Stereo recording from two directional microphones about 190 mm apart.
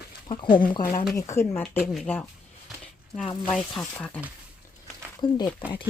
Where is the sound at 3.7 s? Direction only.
5° left (ahead or behind).